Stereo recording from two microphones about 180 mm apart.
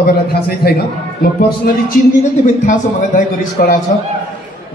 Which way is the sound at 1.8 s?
45° left (ahead or behind).